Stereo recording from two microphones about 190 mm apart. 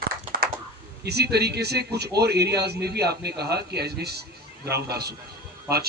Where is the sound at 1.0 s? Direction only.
60° right (ahead or behind).